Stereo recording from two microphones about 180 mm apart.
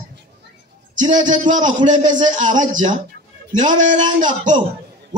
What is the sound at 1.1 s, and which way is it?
Speech, 45° right (ahead or behind).